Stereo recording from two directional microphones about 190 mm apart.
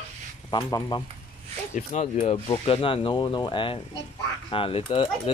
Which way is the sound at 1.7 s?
35° left (ahead or behind).